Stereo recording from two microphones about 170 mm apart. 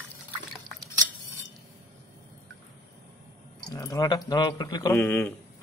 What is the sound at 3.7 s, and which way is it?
Speech, 20° left (ahead or behind).